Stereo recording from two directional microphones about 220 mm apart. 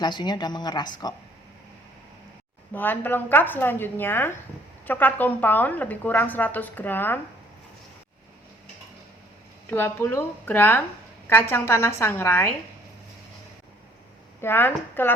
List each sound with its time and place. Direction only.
0.0 s a woman's voice: 20° left (ahead or behind)
2.7 s a woman's voice: 10° left (ahead or behind)
9.6 s a woman's voice: 10° left (ahead or behind)
14.4 s a woman's voice: 10° left (ahead or behind)